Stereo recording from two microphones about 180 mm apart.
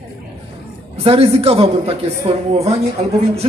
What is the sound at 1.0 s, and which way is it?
A man's voice, 30° right (ahead or behind).